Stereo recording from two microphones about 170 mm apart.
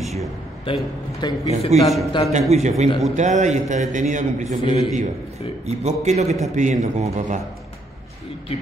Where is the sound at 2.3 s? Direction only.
40° right (ahead or behind).